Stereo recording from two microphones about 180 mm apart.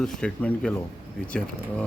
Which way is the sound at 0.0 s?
5° left (ahead or behind).